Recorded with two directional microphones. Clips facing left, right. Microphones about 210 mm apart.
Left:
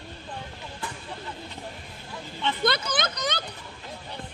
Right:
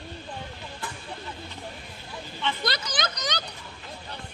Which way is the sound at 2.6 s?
55° left (ahead or behind).